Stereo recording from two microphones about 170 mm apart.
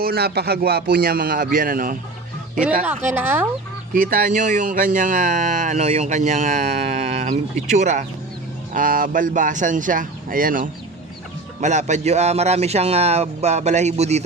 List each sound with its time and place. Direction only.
0.0 s speech: 65° right (ahead or behind)
2.8 s speech: 15° right (ahead or behind)
4.1 s a man's voice: 50° right (ahead or behind)